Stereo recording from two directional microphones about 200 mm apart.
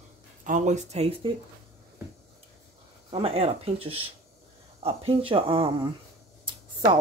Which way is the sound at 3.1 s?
30° right (ahead or behind).